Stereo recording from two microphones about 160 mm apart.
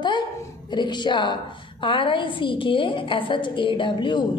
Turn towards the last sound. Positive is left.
turn(degrees=30)  # may be behind; listen again after turning